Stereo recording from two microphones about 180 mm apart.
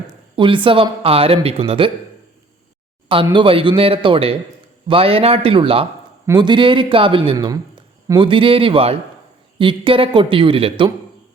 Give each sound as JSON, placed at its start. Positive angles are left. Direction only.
{"t": 0.1, "sound": "speech", "side_deg": -25}
{"t": 3.3, "sound": "a man's voice", "side_deg": -30}